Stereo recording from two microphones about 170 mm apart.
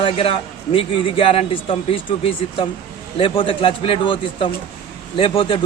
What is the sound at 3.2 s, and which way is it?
A man's voice, 30° left (ahead or behind).